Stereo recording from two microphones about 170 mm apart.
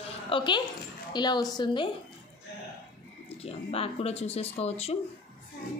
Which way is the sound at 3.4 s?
35° left (ahead or behind).